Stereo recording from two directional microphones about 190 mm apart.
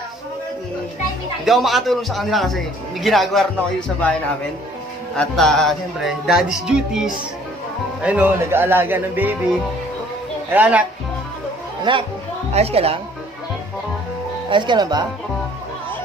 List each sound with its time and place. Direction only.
1.4 s speech: centre (ahead or behind)
5.1 s speech: 5° left (ahead or behind)
10.5 s speech: 10° right (ahead or behind)
11.9 s a woman's voice: 25° right (ahead or behind)
14.5 s speech: 25° right (ahead or behind)